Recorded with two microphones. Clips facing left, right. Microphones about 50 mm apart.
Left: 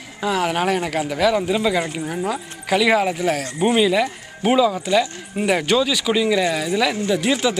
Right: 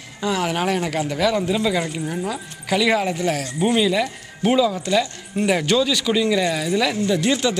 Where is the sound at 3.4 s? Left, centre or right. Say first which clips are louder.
Left 2 dB; centre.